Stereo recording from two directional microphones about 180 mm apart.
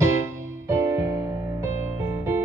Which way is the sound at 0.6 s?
15° right (ahead or behind).